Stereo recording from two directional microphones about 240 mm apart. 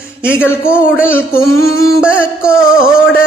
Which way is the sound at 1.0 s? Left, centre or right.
Centre.